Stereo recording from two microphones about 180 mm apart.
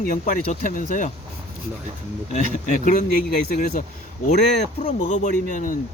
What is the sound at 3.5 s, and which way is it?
Speech, 50° left (ahead or behind).